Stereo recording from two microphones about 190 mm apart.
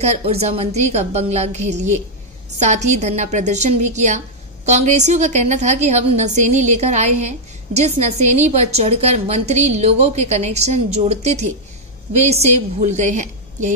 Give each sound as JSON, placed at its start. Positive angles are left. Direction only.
{"t": 0.0, "sound": "a woman's voice", "side_deg": -35}